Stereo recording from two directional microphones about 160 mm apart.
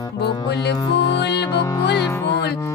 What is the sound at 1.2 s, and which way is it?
Music, 90° left.